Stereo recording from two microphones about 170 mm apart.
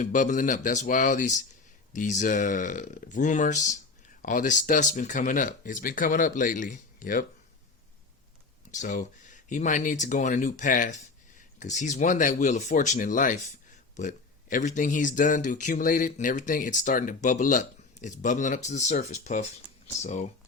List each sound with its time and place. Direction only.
0.0 s speech: 50° left (ahead or behind)
8.7 s speech: 45° left (ahead or behind)